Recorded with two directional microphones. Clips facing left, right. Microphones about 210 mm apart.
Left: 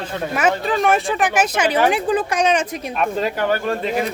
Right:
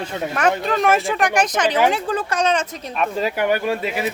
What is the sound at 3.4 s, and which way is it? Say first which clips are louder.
Speech: right 2 dB; 10° right (ahead or behind).